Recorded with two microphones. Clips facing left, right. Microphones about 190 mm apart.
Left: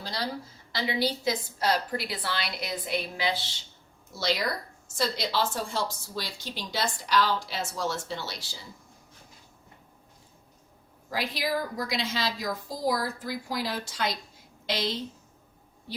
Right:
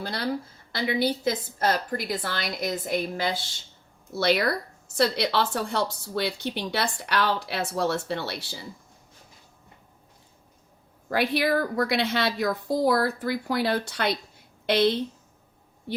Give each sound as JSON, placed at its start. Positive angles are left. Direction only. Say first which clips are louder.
{"t": 0.0, "sound": "a woman's voice", "louder": "right 5 dB", "side_deg": -55}
{"t": 4.1, "sound": "speech", "louder": "right 6 dB", "side_deg": -60}
{"t": 11.1, "sound": "speech", "louder": "right 6 dB", "side_deg": -60}